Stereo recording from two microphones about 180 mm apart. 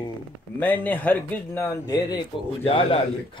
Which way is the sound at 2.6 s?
30° left (ahead or behind).